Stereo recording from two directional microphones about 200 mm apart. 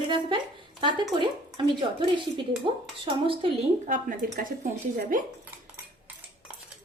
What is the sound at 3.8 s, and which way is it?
Speech, 40° right (ahead or behind).